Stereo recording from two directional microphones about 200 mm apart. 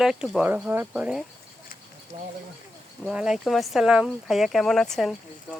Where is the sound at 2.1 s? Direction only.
30° right (ahead or behind).